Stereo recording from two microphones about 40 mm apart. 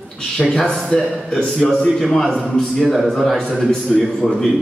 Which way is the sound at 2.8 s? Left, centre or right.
Centre.